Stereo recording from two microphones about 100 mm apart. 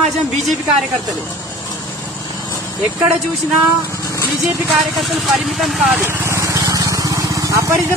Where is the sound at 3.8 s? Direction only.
30° left (ahead or behind).